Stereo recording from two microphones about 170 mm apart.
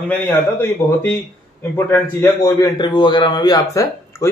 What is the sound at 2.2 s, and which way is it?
A man's voice, 25° left (ahead or behind).